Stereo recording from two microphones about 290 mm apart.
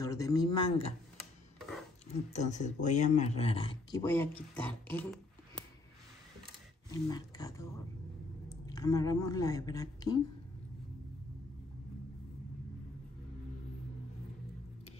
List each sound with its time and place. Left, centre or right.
0.0 s a woman's voice: centre
2.3 s speech: left; by 5.7 s centre
6.9 s a woman's voice: centre